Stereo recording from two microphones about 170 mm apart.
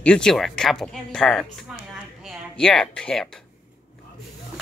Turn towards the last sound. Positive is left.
turn(degrees=5)  # may be behind; listen again after turning